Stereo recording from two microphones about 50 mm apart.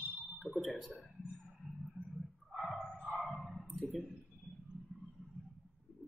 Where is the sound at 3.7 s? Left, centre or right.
Centre.